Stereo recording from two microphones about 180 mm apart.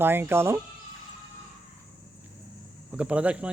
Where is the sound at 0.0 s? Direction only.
10° right (ahead or behind).